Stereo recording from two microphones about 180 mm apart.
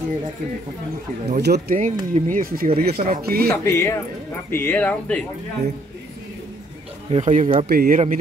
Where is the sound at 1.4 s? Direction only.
65° right (ahead or behind).